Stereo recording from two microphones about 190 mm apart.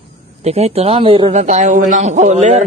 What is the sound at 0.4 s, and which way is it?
A man's voice, 35° right (ahead or behind).